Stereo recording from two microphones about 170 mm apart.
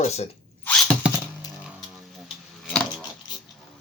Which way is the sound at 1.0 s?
5° right (ahead or behind).